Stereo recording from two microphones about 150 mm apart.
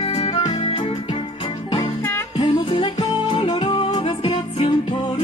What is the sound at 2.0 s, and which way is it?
Music, 15° left (ahead or behind).